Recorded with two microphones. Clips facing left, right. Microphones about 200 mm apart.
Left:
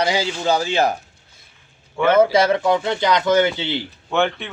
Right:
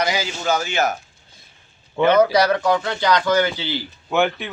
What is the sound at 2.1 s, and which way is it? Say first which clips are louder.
A man's voice: left 2 dB; 25° left (ahead or behind).